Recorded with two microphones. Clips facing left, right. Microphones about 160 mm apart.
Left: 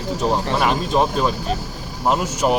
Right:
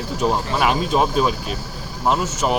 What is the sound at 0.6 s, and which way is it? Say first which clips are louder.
Speech: right 2 dB; 5° right (ahead or behind).